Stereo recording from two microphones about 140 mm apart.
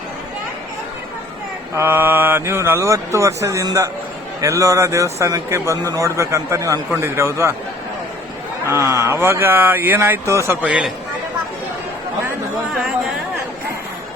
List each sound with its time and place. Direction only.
1.7 s mantra: 15° right (ahead or behind)
8.6 s mantra: 20° right (ahead or behind)
10.7 s a man's voice: 10° right (ahead or behind)